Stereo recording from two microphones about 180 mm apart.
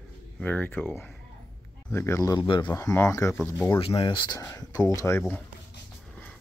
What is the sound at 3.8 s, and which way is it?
Speech, 30° left (ahead or behind).